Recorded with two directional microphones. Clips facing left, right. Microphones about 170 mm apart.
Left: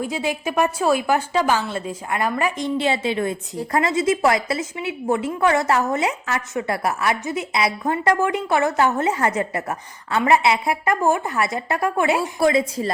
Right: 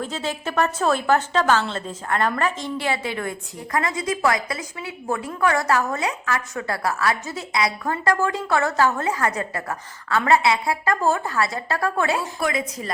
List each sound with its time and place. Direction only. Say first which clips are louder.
0.0 s a woman's voice: left 3 dB; 15° left (ahead or behind)
12.4 s a woman's voice: left 7 dB; 30° left (ahead or behind)